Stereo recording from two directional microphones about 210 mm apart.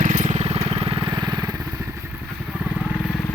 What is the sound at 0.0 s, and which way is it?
Vehicle, 35° right (ahead or behind).